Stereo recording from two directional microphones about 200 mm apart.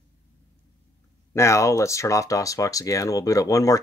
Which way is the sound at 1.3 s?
15° left (ahead or behind).